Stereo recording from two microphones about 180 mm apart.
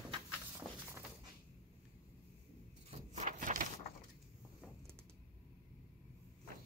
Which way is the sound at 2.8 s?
40° right (ahead or behind).